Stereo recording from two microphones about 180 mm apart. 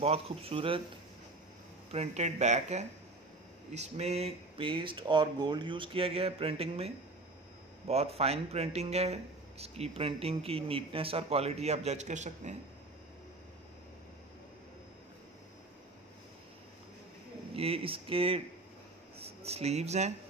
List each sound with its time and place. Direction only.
0.0 s speech: 35° right (ahead or behind)
1.9 s speech: 35° right (ahead or behind)
7.9 s speech: 35° right (ahead or behind)
17.6 s speech: 30° right (ahead or behind)
19.4 s speech: 35° right (ahead or behind)